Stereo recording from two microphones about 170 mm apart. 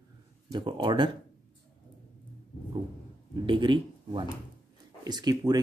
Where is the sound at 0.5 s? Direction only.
25° right (ahead or behind).